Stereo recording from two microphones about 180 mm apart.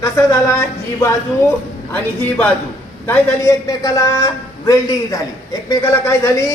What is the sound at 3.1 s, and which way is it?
A man's voice, 15° left (ahead or behind).